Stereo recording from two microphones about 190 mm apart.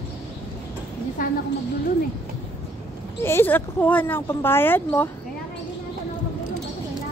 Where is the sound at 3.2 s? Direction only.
10° left (ahead or behind).